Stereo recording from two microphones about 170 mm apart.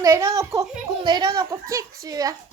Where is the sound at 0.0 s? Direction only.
15° right (ahead or behind).